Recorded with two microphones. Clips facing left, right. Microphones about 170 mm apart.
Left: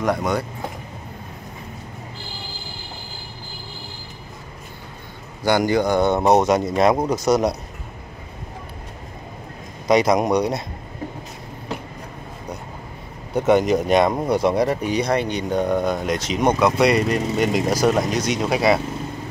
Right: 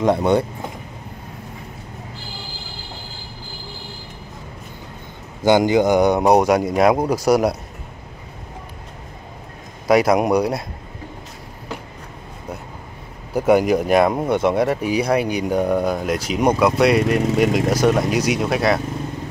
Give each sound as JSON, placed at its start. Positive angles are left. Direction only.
{"t": 0.0, "sound": "speech", "side_deg": -25}
{"t": 5.4, "sound": "speech", "side_deg": -20}
{"t": 9.8, "sound": "speech", "side_deg": -5}
{"t": 13.3, "sound": "speech", "side_deg": -5}